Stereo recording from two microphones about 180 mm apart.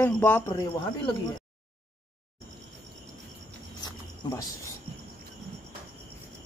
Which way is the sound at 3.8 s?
20° left (ahead or behind).